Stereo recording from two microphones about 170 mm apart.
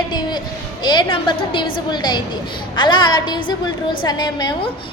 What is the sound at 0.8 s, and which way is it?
A woman's voice, 25° left (ahead or behind).